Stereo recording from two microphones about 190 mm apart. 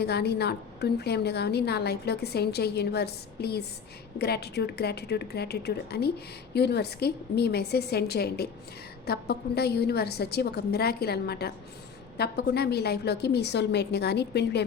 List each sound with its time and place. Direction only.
0.0 s a woman's voice: 60° left (ahead or behind)